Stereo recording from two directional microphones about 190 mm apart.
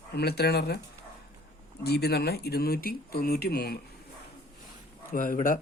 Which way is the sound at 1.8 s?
55° left (ahead or behind).